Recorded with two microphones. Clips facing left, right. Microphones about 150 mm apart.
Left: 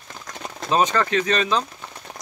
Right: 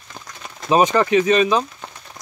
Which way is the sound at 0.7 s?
15° right (ahead or behind).